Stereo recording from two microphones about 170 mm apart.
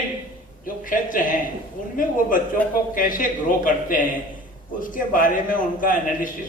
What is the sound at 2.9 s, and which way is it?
Speech, 55° left (ahead or behind).